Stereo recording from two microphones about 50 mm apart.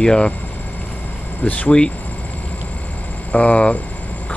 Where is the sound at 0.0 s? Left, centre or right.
Centre.